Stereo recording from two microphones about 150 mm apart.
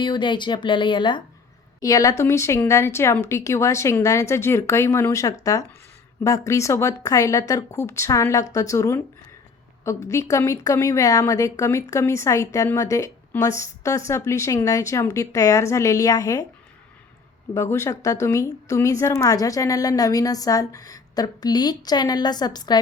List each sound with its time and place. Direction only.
0.0 s a woman's voice: 30° left (ahead or behind)
17.5 s speech: 20° left (ahead or behind)